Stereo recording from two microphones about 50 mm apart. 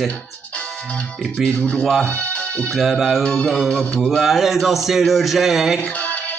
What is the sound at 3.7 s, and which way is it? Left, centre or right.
Speech, left.